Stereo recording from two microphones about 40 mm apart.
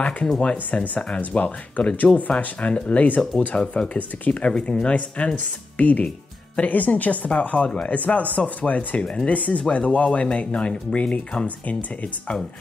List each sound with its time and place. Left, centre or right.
0.7 s speech: left
3.2 s speech: left
6.0 s music: left
6.7 s a woman's voice: left